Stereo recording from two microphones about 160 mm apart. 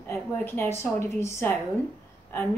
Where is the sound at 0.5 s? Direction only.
15° left (ahead or behind).